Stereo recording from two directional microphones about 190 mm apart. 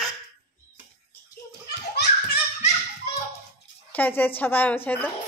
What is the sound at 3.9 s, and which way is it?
A woman's voice, 10° left (ahead or behind).